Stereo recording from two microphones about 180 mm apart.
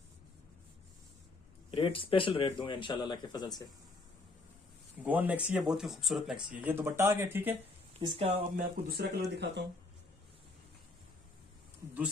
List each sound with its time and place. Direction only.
1.7 s speech: 30° left (ahead or behind)
5.0 s speech: 10° right (ahead or behind)
8.1 s speech: 30° right (ahead or behind)
8.5 s speech: 60° right (ahead or behind)